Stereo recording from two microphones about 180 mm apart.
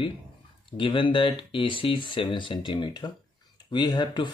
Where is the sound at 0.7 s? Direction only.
30° left (ahead or behind).